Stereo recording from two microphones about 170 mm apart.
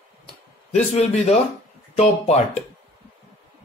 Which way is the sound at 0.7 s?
40° left (ahead or behind).